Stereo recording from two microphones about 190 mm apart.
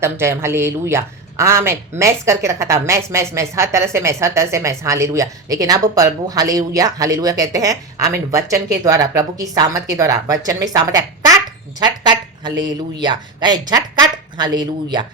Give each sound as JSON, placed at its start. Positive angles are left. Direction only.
{"t": 0.0, "sound": "a woman's voice", "side_deg": -15}